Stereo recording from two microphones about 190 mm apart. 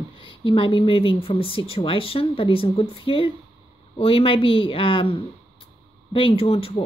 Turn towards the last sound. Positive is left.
turn(degrees=30)  # may be behind; listen again after turning